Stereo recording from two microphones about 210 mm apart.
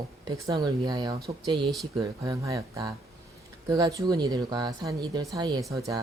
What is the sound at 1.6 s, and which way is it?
Speech, centre (ahead or behind).